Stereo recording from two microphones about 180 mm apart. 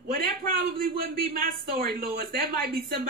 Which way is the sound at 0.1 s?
50° right (ahead or behind).